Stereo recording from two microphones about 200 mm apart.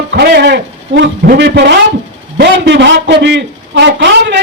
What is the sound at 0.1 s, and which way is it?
A man's voice, 55° right (ahead or behind).